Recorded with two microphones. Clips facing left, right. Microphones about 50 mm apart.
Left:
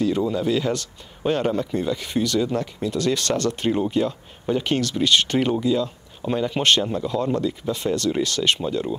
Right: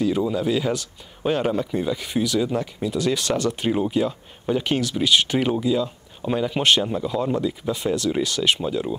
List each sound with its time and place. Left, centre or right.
0.0 s speech: centre